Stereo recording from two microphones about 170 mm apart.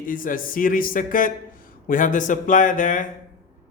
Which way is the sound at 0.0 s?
55° left (ahead or behind).